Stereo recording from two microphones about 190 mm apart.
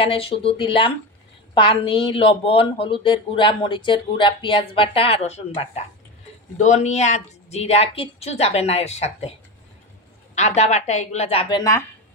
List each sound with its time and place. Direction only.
0.0 s a woman's voice: 30° left (ahead or behind)
10.3 s speech: 35° left (ahead or behind); by 11.8 s 20° left (ahead or behind)